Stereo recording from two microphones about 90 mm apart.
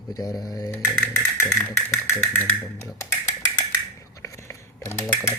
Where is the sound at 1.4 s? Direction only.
30° left (ahead or behind).